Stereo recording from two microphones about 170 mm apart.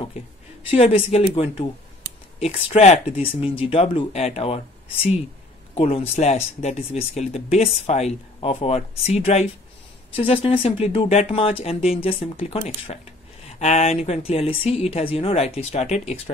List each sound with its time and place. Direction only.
0.7 s speech: 35° left (ahead or behind)
2.4 s speech: 40° left (ahead or behind)
5.8 s speech: 35° left (ahead or behind)